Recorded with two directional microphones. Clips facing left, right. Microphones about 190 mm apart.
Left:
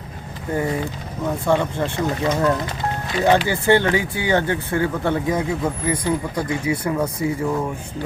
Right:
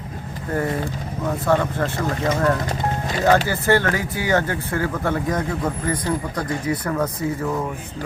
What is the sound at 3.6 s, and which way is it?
Speech, 20° left (ahead or behind).